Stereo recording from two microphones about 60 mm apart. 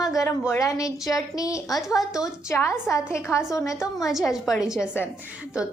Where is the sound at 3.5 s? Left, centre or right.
Left.